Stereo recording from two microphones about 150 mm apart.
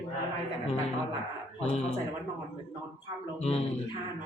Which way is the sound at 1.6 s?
45° left (ahead or behind).